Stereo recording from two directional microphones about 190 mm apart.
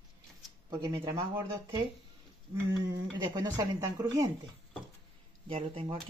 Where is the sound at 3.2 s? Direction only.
20° right (ahead or behind).